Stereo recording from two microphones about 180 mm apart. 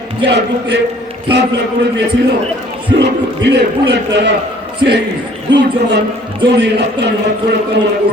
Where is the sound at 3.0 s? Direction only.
70° right (ahead or behind).